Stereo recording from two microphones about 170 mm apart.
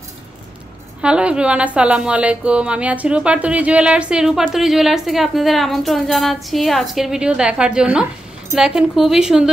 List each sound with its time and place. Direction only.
1.0 s speech: 5° right (ahead or behind)